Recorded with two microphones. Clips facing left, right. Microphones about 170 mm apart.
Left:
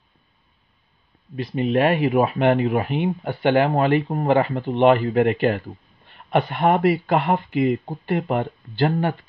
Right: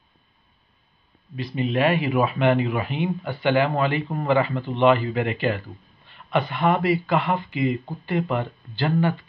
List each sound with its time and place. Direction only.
1.3 s speech: 50° left (ahead or behind)
8.2 s speech: 40° left (ahead or behind)